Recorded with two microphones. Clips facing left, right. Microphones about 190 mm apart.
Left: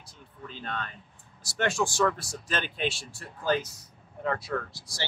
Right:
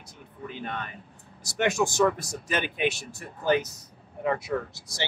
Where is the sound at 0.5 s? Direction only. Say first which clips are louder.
Right 2 dB; 15° right (ahead or behind).